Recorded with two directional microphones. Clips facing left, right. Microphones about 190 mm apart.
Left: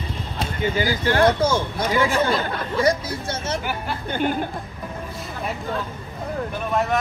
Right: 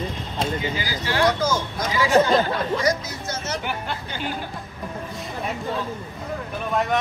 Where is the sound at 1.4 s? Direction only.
30° left (ahead or behind).